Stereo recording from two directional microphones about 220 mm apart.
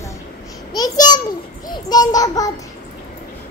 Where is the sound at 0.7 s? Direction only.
15° left (ahead or behind).